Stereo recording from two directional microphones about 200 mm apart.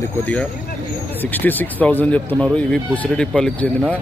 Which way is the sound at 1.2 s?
10° left (ahead or behind).